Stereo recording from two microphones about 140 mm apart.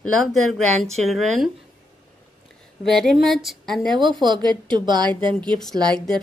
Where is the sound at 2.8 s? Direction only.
Centre (ahead or behind).